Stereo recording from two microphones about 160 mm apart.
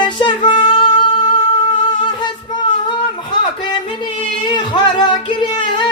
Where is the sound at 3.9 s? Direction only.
30° left (ahead or behind).